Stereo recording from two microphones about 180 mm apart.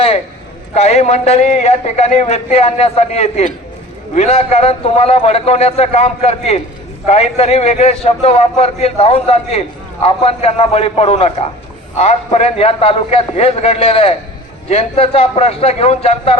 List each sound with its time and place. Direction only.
0.7 s a man's voice: 35° left (ahead or behind)